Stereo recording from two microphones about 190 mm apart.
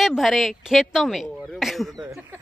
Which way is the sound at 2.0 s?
15° right (ahead or behind).